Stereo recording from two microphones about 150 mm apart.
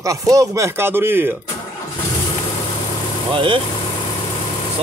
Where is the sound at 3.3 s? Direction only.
35° right (ahead or behind).